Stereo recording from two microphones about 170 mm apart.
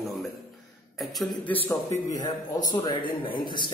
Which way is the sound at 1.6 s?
15° left (ahead or behind).